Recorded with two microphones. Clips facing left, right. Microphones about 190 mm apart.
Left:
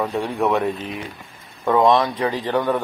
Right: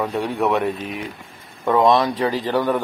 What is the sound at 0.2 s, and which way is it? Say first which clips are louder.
Speech: right 1 dB; 5° right (ahead or behind).